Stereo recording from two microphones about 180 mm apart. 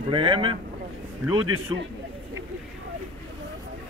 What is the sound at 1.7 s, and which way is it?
Speech, 20° right (ahead or behind).